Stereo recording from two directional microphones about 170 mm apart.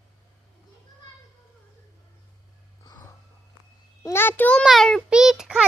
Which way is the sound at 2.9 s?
25° left (ahead or behind).